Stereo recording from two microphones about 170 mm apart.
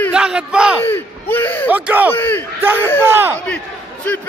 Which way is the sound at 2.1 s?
15° left (ahead or behind).